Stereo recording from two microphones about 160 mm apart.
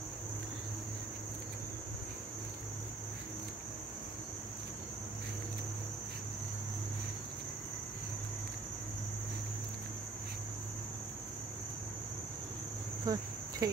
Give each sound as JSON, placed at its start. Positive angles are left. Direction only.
{"t": 13.0, "sound": "cricket", "side_deg": -25}